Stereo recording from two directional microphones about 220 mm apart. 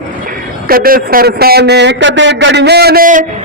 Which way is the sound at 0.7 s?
40° right (ahead or behind).